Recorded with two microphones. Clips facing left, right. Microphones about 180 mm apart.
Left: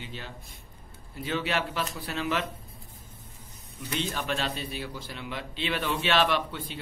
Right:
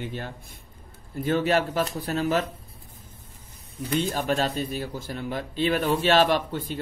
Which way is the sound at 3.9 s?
45° right (ahead or behind).